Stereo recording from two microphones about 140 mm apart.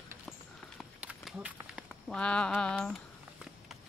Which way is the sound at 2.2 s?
5° left (ahead or behind).